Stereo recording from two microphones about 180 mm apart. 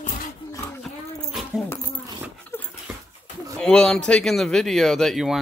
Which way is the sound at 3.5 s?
5° left (ahead or behind).